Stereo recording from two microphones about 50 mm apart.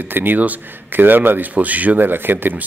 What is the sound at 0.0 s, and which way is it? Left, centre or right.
A man's voice, right.